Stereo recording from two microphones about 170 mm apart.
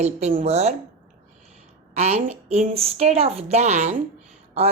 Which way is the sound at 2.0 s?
40° right (ahead or behind).